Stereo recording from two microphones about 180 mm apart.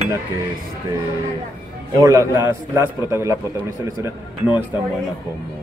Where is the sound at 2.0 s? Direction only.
20° right (ahead or behind).